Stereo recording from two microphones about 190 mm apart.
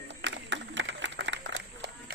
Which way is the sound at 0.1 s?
70° right (ahead or behind).